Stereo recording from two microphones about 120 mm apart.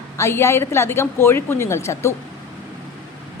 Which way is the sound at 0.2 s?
20° left (ahead or behind).